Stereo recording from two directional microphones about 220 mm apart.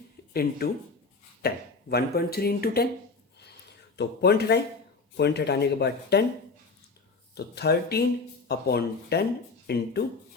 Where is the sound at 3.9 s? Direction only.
50° left (ahead or behind).